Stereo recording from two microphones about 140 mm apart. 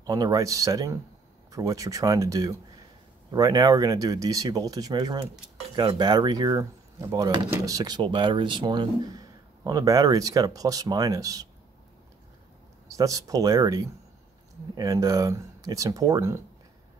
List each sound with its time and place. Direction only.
0.0 s speech: 25° right (ahead or behind)
12.9 s speech: 25° right (ahead or behind)